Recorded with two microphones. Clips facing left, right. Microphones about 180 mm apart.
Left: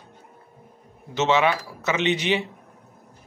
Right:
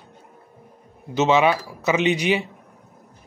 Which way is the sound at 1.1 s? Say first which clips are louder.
Right 3 dB; 15° right (ahead or behind).